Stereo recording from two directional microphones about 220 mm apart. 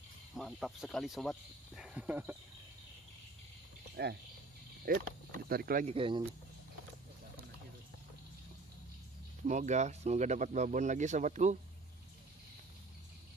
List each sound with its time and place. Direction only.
0.4 s speech: centre (ahead or behind)
2.0 s speech: 10° right (ahead or behind)
3.9 s speech: 50° right (ahead or behind)
5.9 s speech: 25° right (ahead or behind)
9.4 s speech: 35° right (ahead or behind)